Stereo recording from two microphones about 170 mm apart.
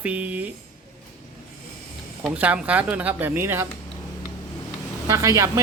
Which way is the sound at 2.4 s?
10° right (ahead or behind).